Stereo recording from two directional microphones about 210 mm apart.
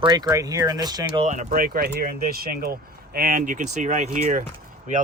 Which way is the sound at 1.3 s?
40° right (ahead or behind).